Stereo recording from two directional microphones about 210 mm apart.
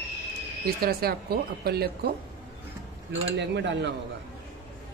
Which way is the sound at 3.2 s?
55° right (ahead or behind).